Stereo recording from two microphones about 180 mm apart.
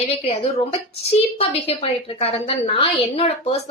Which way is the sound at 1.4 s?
35° left (ahead or behind).